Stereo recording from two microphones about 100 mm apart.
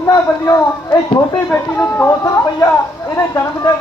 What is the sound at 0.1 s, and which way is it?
Speech, 45° left (ahead or behind).